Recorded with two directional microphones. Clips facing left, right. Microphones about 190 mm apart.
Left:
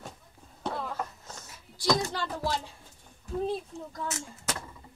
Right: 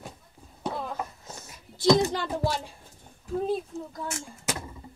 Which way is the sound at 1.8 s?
25° right (ahead or behind).